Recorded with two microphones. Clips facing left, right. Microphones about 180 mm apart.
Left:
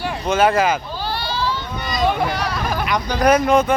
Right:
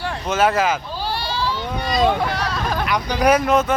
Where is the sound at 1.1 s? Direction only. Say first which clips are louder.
Left 1 dB; 35° right (ahead or behind).